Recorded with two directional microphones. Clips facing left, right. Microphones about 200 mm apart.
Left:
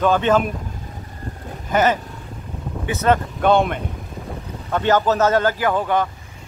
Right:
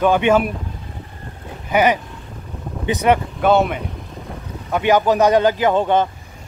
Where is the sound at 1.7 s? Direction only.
15° right (ahead or behind).